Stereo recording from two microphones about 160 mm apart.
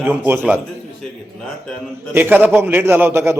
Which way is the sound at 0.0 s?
10° right (ahead or behind).